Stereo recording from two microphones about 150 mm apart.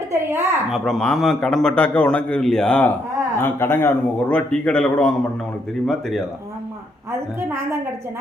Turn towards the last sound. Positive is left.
turn(degrees=-15)  # may be behind; listen again after turning